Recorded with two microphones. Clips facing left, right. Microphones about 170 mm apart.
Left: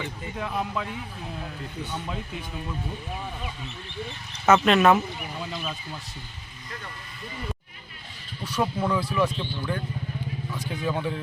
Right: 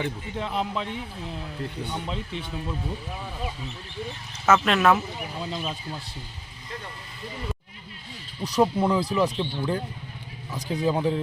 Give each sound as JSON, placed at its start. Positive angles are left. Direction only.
{"t": 0.3, "sound": "speech", "side_deg": -20}
{"t": 4.4, "sound": "speech", "side_deg": 0}
{"t": 5.4, "sound": "speech", "side_deg": -30}
{"t": 8.4, "sound": "speech", "side_deg": -35}